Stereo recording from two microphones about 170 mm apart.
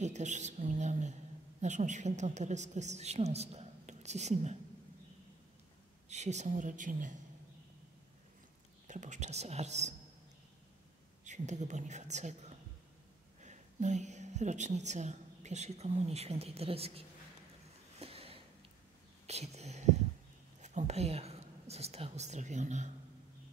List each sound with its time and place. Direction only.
0.0 s a woman's voice: 45° right (ahead or behind)
6.0 s a woman's voice: 40° right (ahead or behind)
8.8 s speech: 45° right (ahead or behind)
11.2 s a woman's voice: 45° right (ahead or behind)
17.9 s a sound: 35° right (ahead or behind)
19.2 s whispering: 40° right (ahead or behind)
20.6 s speech: 40° right (ahead or behind)